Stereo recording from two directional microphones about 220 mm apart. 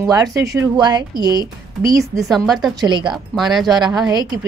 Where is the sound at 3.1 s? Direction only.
Centre (ahead or behind).